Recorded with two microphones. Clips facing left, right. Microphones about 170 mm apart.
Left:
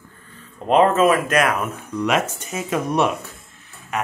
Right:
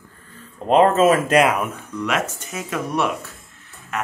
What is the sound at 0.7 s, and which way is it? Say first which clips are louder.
Speech: right 1 dB; 35° right (ahead or behind).